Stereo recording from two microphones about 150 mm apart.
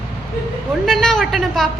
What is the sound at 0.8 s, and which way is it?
Speech, 5° left (ahead or behind).